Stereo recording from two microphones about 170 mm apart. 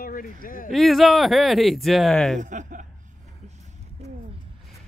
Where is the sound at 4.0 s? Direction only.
40° right (ahead or behind).